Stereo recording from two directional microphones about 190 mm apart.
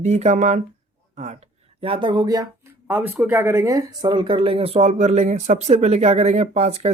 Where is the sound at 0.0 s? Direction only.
35° right (ahead or behind).